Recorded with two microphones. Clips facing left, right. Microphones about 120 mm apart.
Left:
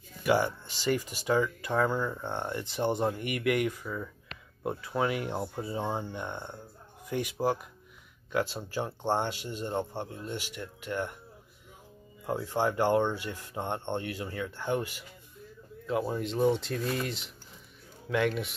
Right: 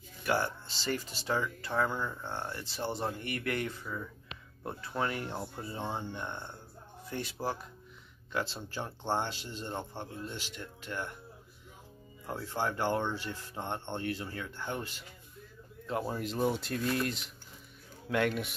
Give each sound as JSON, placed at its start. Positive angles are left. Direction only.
{"t": 0.2, "sound": "speech", "side_deg": 15}
{"t": 12.3, "sound": "speech", "side_deg": 15}
{"t": 15.9, "sound": "speech", "side_deg": 0}